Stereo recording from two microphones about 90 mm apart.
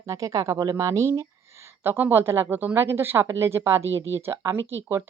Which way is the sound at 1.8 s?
25° right (ahead or behind).